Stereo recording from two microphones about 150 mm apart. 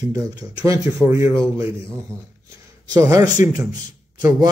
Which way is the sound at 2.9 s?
20° right (ahead or behind).